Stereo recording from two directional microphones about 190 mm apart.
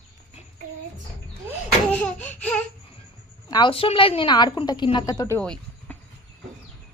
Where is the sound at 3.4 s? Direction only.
25° left (ahead or behind); by 5.9 s 5° left (ahead or behind).